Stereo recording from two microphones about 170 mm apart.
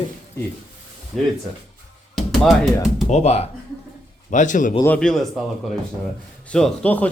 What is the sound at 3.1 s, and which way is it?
Speech, 40° left (ahead or behind).